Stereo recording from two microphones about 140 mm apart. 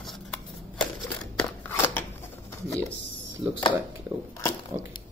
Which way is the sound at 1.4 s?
15° left (ahead or behind).